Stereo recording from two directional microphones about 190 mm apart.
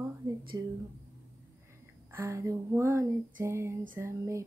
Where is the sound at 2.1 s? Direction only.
15° right (ahead or behind).